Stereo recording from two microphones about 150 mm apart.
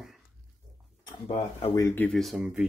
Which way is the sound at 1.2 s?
40° left (ahead or behind).